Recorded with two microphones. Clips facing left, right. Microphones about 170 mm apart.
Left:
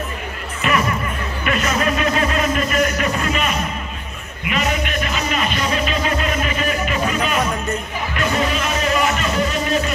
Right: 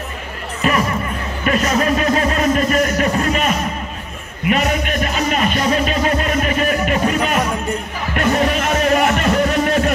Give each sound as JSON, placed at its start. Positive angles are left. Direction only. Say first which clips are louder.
{"t": 0.6, "sound": "music", "louder": "right 2 dB", "side_deg": -35}